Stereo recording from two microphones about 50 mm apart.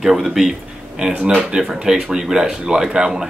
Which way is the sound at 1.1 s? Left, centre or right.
Right.